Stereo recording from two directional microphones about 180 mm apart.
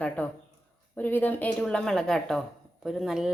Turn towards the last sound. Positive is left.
turn(degrees=0)  # may be behind; listen again after turning